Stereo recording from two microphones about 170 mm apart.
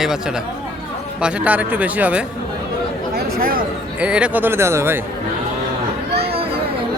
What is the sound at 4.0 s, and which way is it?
A man's voice, 5° right (ahead or behind).